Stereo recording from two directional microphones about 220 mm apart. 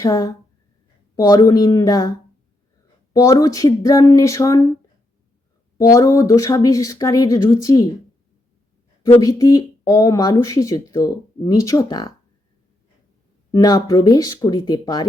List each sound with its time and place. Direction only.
0.0 s speech: 15° left (ahead or behind)
5.7 s speech: 15° left (ahead or behind)
9.0 s speech: 20° left (ahead or behind)
13.5 s speech: 15° left (ahead or behind)